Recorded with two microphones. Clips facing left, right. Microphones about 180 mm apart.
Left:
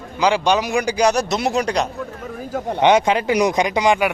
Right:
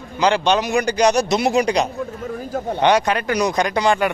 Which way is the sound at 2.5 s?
15° left (ahead or behind).